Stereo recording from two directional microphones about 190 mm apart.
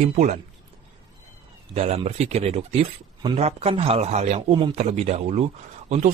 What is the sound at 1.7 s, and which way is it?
A man's voice, 35° right (ahead or behind).